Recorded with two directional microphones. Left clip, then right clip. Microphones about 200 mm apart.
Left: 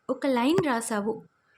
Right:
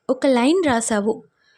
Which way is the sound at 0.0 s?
30° right (ahead or behind).